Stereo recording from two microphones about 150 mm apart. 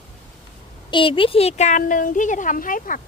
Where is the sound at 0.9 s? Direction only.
35° left (ahead or behind).